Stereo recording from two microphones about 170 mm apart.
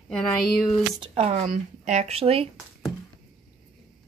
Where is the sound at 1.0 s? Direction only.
35° right (ahead or behind).